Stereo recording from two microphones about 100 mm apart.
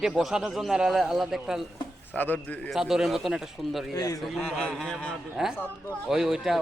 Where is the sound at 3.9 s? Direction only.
35° left (ahead or behind).